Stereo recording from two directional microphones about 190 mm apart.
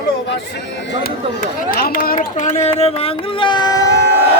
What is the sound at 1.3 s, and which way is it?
Speech, 50° left (ahead or behind).